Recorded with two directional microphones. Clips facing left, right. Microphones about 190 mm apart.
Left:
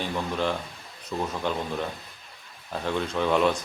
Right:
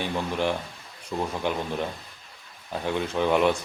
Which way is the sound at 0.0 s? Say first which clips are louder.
Right 1 dB; 15° right (ahead or behind).